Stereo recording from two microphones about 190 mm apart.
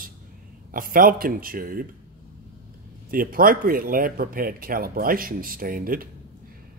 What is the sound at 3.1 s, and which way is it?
Speech, 50° right (ahead or behind).